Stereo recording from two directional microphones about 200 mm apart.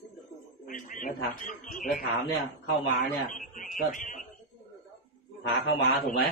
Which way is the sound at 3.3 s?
40° left (ahead or behind).